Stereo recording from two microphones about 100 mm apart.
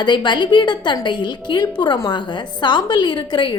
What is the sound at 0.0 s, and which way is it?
A woman's voice, 50° left (ahead or behind).